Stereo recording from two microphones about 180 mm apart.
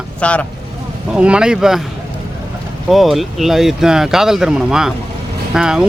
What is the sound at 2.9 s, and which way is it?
Speech, centre (ahead or behind).